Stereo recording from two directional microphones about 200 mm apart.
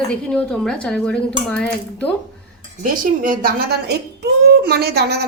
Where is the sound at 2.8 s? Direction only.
45° right (ahead or behind).